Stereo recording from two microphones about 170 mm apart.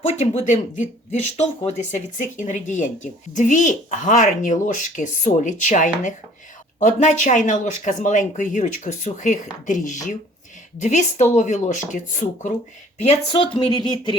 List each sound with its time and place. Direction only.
0.0 s speech: 40° left (ahead or behind)
13.0 s a woman's voice: 35° left (ahead or behind)